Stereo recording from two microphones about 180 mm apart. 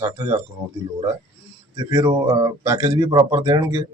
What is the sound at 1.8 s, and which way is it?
Speech, 20° right (ahead or behind).